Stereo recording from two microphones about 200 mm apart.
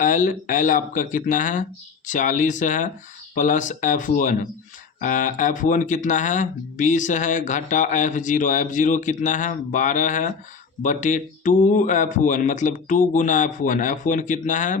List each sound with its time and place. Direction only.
0.0 s speech: 40° left (ahead or behind)